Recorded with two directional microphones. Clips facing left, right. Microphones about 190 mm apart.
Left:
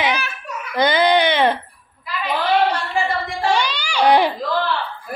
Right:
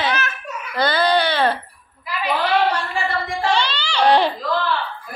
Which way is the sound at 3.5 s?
15° left (ahead or behind).